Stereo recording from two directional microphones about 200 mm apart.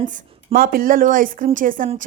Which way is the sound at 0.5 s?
45° right (ahead or behind).